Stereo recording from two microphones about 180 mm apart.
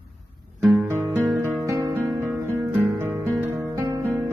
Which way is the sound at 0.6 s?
Centre (ahead or behind).